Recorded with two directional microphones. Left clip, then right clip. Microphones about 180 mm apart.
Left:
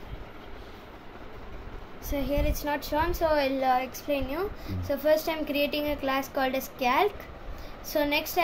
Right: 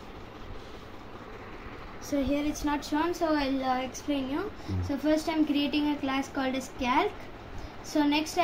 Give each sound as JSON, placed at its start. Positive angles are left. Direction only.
{"t": 2.3, "sound": "a woman's voice", "side_deg": 65}